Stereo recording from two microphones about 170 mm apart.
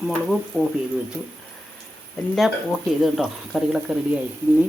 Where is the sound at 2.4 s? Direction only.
Centre (ahead or behind).